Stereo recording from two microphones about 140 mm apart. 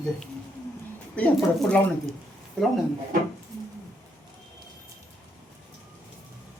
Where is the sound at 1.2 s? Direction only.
10° left (ahead or behind).